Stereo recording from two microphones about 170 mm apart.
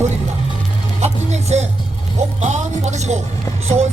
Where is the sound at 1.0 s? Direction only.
40° right (ahead or behind).